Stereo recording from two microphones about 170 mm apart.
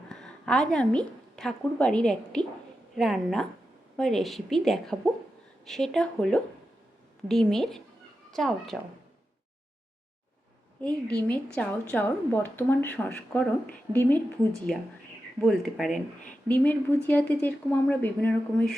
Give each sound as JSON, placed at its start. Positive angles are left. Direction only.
{"t": 0.1, "sound": "a woman's voice", "side_deg": 5}
{"t": 10.8, "sound": "a woman's voice", "side_deg": 10}